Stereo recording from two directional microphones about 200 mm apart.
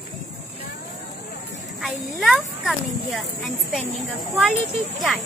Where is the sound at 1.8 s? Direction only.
Centre (ahead or behind).